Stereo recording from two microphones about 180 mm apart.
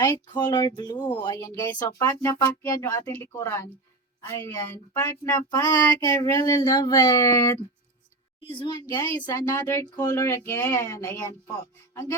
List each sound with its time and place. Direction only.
0.0 s speech: 25° left (ahead or behind)